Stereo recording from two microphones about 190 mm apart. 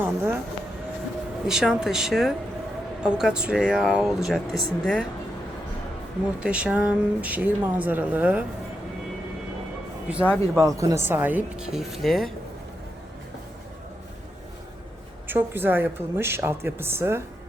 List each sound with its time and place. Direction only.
0.0 s speech: 15° right (ahead or behind)
1.5 s speech: 5° right (ahead or behind)
6.4 s speech: 5° right (ahead or behind)
10.1 s speech: 5° right (ahead or behind)
10.6 s speech: 15° right (ahead or behind); by 12.3 s centre (ahead or behind)
15.3 s speech: 10° right (ahead or behind)